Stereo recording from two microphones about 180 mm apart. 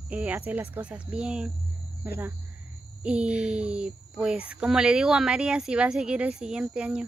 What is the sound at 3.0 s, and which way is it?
A woman's voice, 5° right (ahead or behind).